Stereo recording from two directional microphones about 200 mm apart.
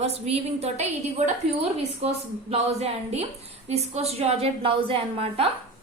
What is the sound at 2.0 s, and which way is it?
A woman's voice, 30° right (ahead or behind).